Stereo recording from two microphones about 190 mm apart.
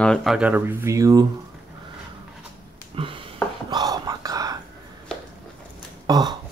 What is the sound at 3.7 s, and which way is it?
Whispering, 20° right (ahead or behind).